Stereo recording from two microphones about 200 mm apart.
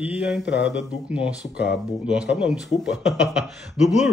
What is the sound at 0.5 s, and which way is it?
Speech, 60° left (ahead or behind).